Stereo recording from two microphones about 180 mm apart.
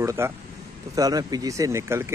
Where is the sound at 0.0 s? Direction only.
15° right (ahead or behind).